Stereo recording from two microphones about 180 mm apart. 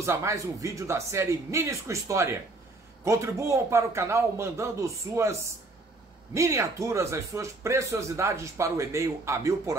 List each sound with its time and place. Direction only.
0.0 s speech: 15° right (ahead or behind)
6.3 s speech: 15° right (ahead or behind)